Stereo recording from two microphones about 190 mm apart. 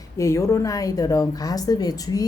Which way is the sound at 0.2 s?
15° left (ahead or behind).